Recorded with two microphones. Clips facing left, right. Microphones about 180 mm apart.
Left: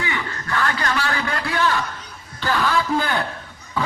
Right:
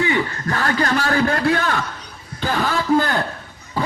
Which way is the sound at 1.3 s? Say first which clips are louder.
Right 3 dB; 55° right (ahead or behind).